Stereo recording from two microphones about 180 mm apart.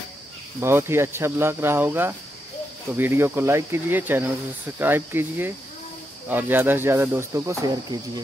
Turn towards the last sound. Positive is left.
turn(degrees=-20)  # may be behind; listen again after turning